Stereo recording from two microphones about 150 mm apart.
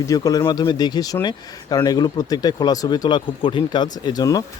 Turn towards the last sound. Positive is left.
turn(degrees=25)  # may be behind; listen again after turning